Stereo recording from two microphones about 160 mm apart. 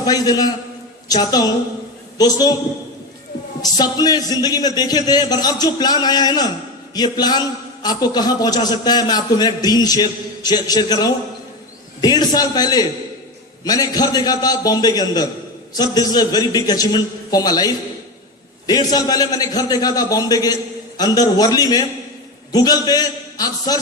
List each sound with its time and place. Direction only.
0.0 s a man's voice: 25° left (ahead or behind)
3.6 s a man's voice: 25° left (ahead or behind)